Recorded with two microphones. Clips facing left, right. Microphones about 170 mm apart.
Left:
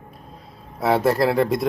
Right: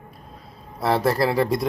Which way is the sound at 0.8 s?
5° left (ahead or behind).